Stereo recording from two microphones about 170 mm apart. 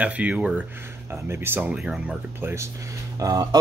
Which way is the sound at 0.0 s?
10° right (ahead or behind).